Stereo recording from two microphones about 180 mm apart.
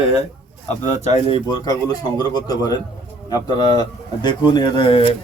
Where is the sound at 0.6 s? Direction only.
40° left (ahead or behind).